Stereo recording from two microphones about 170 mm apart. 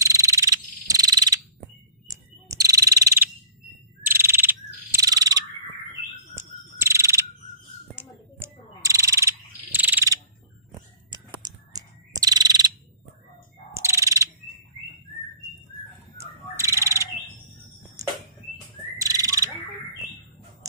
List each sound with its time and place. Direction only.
0.0 s frog: 20° right (ahead or behind)
6.3 s mechanisms: 15° right (ahead or behind)
7.9 s frog: 10° right (ahead or behind)
11.1 s bird vocalization: 25° right (ahead or behind)
13.7 s bird: 15° right (ahead or behind)
16.2 s bird: 15° right (ahead or behind)
18.0 s a sound: 20° right (ahead or behind)
18.9 s bird: 20° right (ahead or behind)